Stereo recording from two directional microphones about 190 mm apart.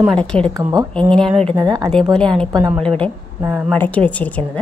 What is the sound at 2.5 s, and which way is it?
Speech, 15° right (ahead or behind).